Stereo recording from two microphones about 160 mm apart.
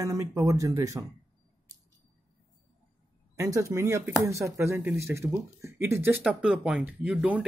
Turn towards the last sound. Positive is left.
turn(degrees=-5)  # may be behind; listen again after turning